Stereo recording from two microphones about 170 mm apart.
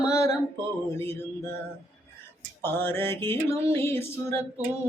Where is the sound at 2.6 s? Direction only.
15° left (ahead or behind).